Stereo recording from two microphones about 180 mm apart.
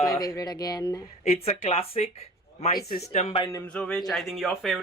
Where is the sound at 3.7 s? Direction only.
5° left (ahead or behind).